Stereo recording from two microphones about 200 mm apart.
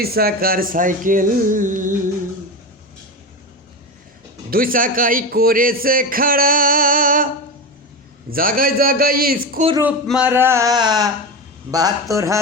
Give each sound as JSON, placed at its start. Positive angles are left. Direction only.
{"t": 0.0, "sound": "a man's voice", "side_deg": -50}
{"t": 4.5, "sound": "a man's voice", "side_deg": -45}
{"t": 8.3, "sound": "a man's voice", "side_deg": -45}
{"t": 9.8, "sound": "speech", "side_deg": -5}